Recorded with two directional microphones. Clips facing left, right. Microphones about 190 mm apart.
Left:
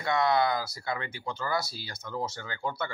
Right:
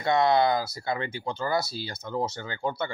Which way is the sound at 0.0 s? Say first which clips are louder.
Right 4 dB; 25° right (ahead or behind).